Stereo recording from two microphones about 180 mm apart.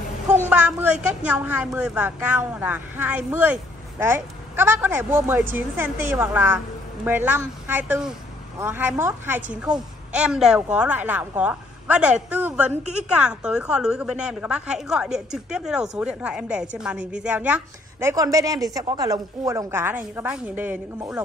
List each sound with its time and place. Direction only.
0.5 s a woman's voice: 10° right (ahead or behind)
18.0 s speech: 20° right (ahead or behind)